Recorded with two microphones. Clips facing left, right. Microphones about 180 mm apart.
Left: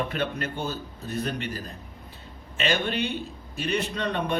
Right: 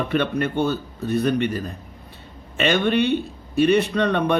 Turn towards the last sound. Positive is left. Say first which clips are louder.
# right 8 dB
turn(degrees=-65)  # may be behind; listen again after turning